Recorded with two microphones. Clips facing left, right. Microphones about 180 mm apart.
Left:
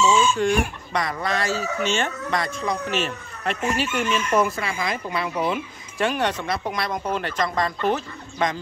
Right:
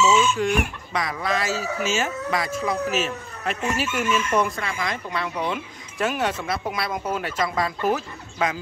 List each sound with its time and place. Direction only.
0.1 s chicken: 30° left (ahead or behind)
0.9 s speech: centre (ahead or behind)